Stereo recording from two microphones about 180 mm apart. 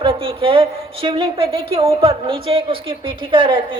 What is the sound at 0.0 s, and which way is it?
A woman's voice, 30° right (ahead or behind).